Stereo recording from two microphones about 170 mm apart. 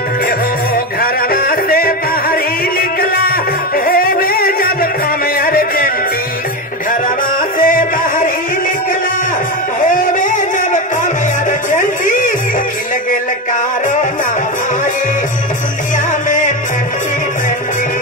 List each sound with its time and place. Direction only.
1.0 s music: 60° left (ahead or behind)
7.6 s music: 50° left (ahead or behind)
9.8 s music: 50° left (ahead or behind)
11.7 s a sound: 50° left (ahead or behind)
16.3 s music: 50° left (ahead or behind)